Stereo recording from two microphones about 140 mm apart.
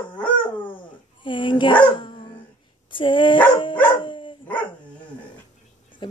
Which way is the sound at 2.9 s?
35° left (ahead or behind).